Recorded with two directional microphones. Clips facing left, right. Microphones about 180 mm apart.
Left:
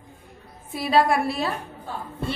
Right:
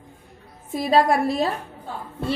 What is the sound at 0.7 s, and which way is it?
Speech, 40° right (ahead or behind).